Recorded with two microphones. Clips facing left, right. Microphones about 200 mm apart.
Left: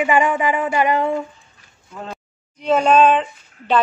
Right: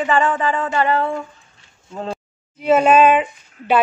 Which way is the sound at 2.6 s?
5° right (ahead or behind).